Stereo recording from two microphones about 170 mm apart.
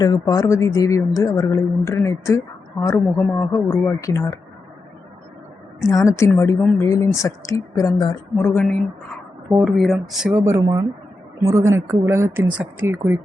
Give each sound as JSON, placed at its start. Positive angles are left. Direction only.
{"t": 0.0, "sound": "speech", "side_deg": 20}
{"t": 5.9, "sound": "speech", "side_deg": 20}
{"t": 8.4, "sound": "speech", "side_deg": 5}